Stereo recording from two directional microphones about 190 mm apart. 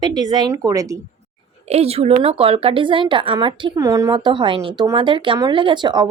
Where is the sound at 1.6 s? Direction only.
35° right (ahead or behind).